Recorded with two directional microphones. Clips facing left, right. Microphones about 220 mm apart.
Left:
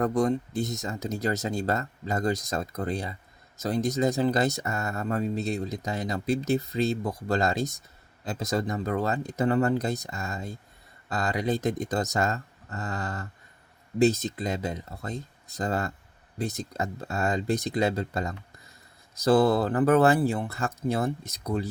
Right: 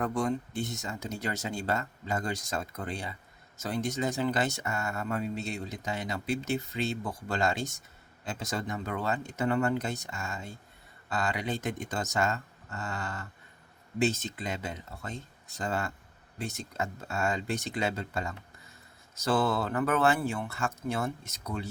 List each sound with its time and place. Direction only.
0.0 s speech: 40° left (ahead or behind)